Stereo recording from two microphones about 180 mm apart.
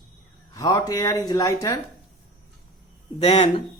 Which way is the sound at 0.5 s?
20° left (ahead or behind).